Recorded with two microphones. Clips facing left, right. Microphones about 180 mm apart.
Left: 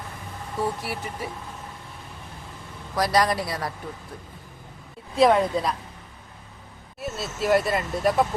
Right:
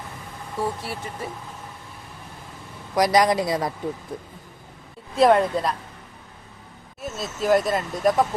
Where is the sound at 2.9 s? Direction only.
15° right (ahead or behind).